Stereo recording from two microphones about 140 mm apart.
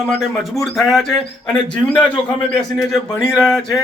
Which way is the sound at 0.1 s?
Centre (ahead or behind).